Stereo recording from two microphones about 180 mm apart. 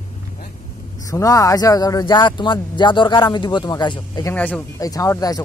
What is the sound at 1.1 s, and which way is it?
Speech, 20° left (ahead or behind).